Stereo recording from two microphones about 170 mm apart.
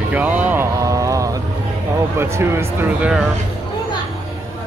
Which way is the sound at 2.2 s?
15° right (ahead or behind).